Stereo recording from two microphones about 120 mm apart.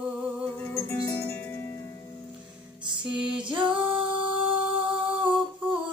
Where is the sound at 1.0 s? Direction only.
15° left (ahead or behind).